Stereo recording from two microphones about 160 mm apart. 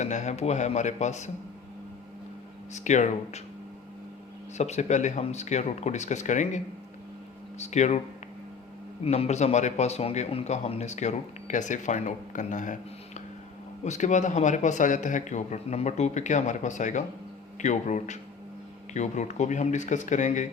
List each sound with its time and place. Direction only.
0.0 s speech: 45° left (ahead or behind)
2.7 s speech: 50° left (ahead or behind)
4.5 s speech: 45° left (ahead or behind)
7.6 s speech: 45° left (ahead or behind)
9.0 s speech: 40° left (ahead or behind)
13.8 s speech: 45° left (ahead or behind)